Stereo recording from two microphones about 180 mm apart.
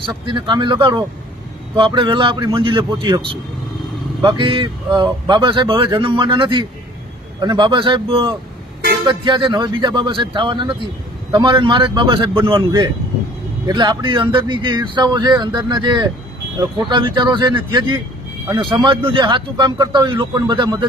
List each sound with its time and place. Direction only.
0.3 s speech: 25° right (ahead or behind)
4.3 s speech: 25° right (ahead or behind)